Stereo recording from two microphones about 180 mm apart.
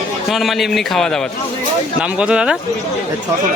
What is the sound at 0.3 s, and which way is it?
Speech, centre (ahead or behind).